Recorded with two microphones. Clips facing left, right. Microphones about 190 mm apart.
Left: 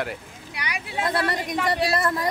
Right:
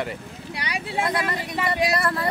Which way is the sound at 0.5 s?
30° right (ahead or behind).